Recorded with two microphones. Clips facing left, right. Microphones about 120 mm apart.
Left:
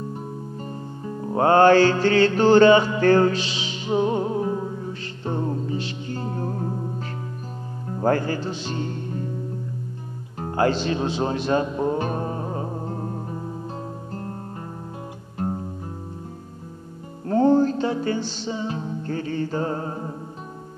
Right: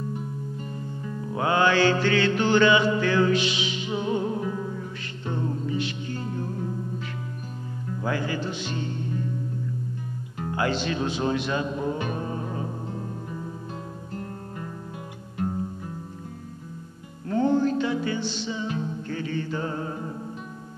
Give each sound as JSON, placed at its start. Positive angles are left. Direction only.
{"t": 0.1, "sound": "music", "side_deg": 35}
{"t": 7.9, "sound": "speech", "side_deg": 45}
{"t": 10.3, "sound": "music", "side_deg": 35}
{"t": 17.2, "sound": "music", "side_deg": 40}